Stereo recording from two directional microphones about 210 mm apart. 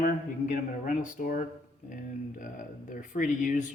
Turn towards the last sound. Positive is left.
turn(degrees=35)  # may be behind; listen again after turning